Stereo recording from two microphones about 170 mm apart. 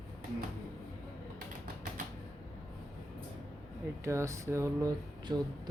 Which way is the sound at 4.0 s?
15° right (ahead or behind).